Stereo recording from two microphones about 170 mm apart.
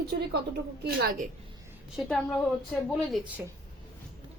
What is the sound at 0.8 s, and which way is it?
Speech, 65° right (ahead or behind).